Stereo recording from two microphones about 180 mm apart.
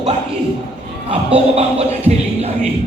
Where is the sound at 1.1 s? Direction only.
35° right (ahead or behind).